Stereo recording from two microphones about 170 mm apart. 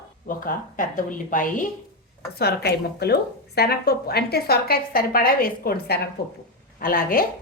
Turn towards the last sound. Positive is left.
turn(degrees=55)  # may be behind; listen again after turning